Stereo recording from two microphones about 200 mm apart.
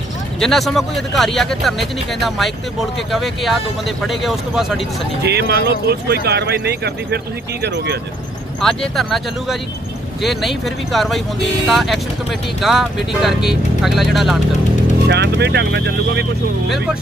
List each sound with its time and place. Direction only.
0.4 s speech: centre (ahead or behind)
5.2 s speech: 55° right (ahead or behind)
8.5 s speech: centre (ahead or behind)
15.0 s speech: 55° right (ahead or behind)
16.6 s speech: centre (ahead or behind)